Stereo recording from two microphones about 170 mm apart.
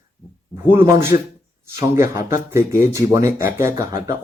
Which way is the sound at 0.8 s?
15° right (ahead or behind).